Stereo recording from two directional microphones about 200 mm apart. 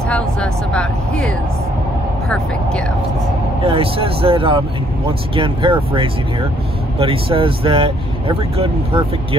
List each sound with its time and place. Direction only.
0.1 s speech: 5° left (ahead or behind)
3.6 s speech: 25° right (ahead or behind)